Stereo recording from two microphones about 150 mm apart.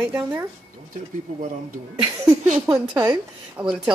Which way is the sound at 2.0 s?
20° right (ahead or behind).